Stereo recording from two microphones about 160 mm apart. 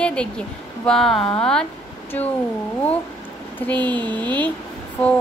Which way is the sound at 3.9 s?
25° right (ahead or behind).